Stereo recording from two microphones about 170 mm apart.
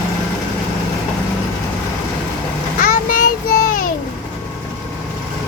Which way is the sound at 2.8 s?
60° left (ahead or behind).